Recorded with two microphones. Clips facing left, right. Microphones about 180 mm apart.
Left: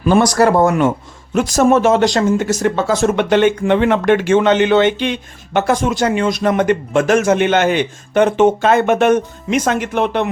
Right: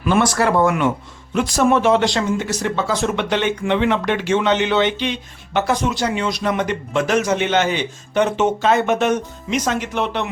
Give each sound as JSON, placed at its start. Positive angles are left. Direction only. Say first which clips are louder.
{"t": 0.0, "sound": "speech", "louder": "left 5 dB", "side_deg": 35}